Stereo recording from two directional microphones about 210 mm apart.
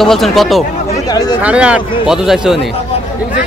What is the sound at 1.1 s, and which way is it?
Speech, 20° left (ahead or behind).